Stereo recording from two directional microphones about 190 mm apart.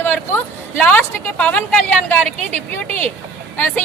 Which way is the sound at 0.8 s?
10° left (ahead or behind).